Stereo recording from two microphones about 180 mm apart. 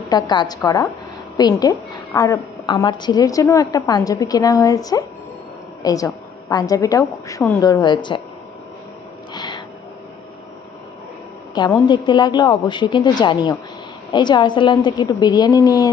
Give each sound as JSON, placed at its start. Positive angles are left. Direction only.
{"t": 0.1, "sound": "a woman's voice", "side_deg": 25}
{"t": 9.3, "sound": "gasp", "side_deg": 25}
{"t": 11.5, "sound": "a woman's voice", "side_deg": 25}